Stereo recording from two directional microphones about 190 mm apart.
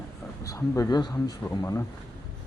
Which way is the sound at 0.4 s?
15° left (ahead or behind).